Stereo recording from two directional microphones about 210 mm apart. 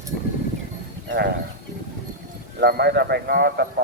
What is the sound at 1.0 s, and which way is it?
Speech, 55° right (ahead or behind).